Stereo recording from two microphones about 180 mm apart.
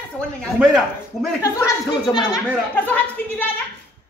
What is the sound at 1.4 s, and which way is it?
Speech, 25° left (ahead or behind).